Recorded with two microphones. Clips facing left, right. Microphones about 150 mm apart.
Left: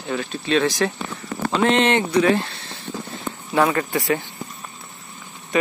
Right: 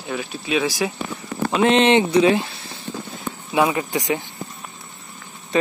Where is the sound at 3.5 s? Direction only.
10° right (ahead or behind).